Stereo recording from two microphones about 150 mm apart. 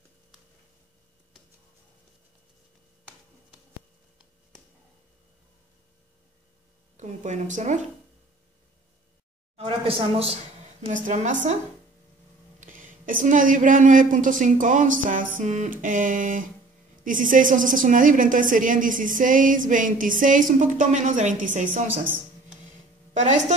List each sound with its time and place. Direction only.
7.0 s a woman's voice: 55° right (ahead or behind)
9.6 s a sound: 40° right (ahead or behind)
10.9 s a woman's voice: 55° right (ahead or behind)
12.5 s a woman's voice: 60° right (ahead or behind)